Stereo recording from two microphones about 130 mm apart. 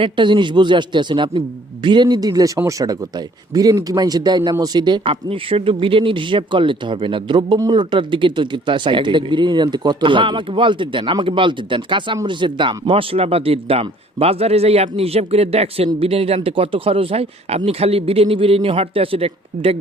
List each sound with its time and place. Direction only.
0.0 s a man's voice: 35° right (ahead or behind)